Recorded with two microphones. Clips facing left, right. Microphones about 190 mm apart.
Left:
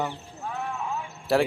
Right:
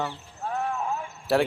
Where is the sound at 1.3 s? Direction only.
Centre (ahead or behind).